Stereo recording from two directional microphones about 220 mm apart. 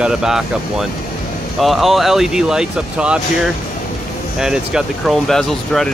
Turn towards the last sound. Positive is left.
turn(degrees=0)  # may be behind; listen again after turning